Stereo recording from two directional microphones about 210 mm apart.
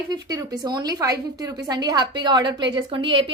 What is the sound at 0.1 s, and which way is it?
A woman's voice, 20° right (ahead or behind).